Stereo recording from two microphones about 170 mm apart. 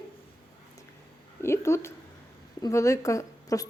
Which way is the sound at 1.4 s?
15° left (ahead or behind).